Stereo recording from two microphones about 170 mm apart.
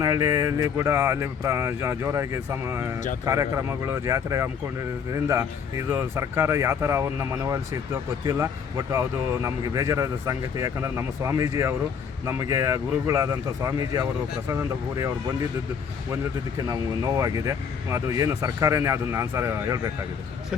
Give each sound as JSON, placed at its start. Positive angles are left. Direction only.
{"t": 0.0, "sound": "speech", "side_deg": -20}
{"t": 8.9, "sound": "speech", "side_deg": -15}
{"t": 16.6, "sound": "speech", "side_deg": -20}